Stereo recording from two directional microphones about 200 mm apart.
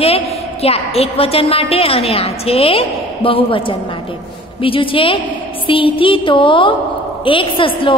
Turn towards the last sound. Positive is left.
turn(degrees=25)  # may be behind; listen again after turning